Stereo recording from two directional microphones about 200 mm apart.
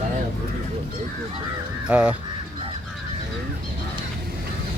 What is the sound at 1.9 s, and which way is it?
Speech, 5° right (ahead or behind).